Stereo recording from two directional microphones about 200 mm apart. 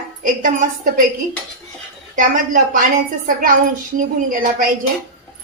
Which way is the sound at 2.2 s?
40° right (ahead or behind).